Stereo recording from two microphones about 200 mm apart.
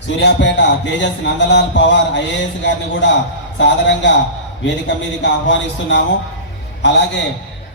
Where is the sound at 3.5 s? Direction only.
65° left (ahead or behind).